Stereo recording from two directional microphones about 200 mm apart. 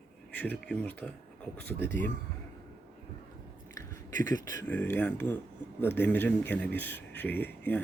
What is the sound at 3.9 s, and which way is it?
A man's voice, 15° left (ahead or behind).